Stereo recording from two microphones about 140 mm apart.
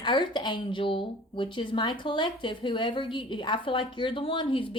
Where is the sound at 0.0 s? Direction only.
35° left (ahead or behind).